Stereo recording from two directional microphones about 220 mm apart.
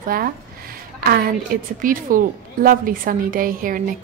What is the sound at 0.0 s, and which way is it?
A woman's voice, 40° right (ahead or behind).